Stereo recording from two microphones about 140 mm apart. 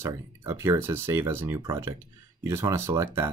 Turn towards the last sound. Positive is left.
turn(degrees=-20)  # may be behind; listen again after turning